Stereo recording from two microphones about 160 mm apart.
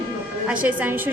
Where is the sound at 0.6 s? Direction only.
10° right (ahead or behind).